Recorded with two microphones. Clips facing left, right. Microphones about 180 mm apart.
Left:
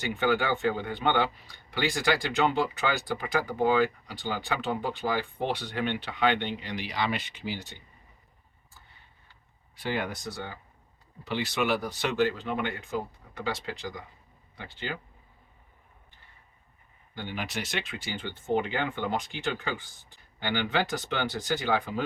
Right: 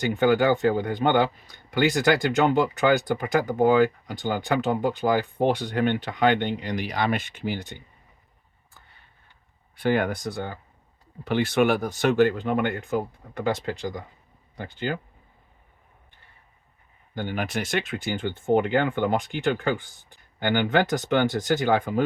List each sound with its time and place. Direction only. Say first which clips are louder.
0.1 s speech: right 6 dB; 45° right (ahead or behind)
9.7 s speech: right 8 dB; 55° right (ahead or behind)
17.2 s speech: right 7 dB; 50° right (ahead or behind)